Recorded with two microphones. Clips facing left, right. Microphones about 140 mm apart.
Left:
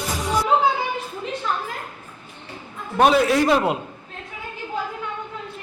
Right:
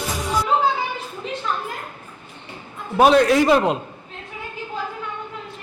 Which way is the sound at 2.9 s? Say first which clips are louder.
Right 2 dB; centre (ahead or behind).